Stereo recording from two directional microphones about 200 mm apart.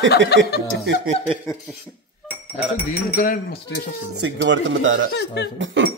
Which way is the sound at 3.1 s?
45° left (ahead or behind).